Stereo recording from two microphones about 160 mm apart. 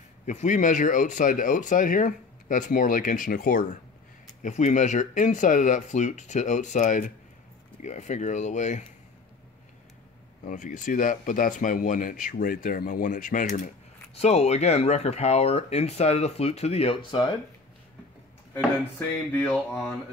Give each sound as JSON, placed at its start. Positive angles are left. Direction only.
{"t": 0.3, "sound": "speech", "side_deg": 50}
{"t": 4.4, "sound": "speech", "side_deg": 50}
{"t": 10.4, "sound": "speech", "side_deg": 55}
{"t": 14.1, "sound": "speech", "side_deg": 40}
{"t": 18.5, "sound": "a sound", "side_deg": 15}